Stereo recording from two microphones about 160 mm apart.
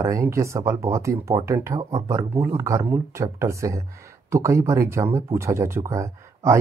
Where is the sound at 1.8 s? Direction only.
40° right (ahead or behind).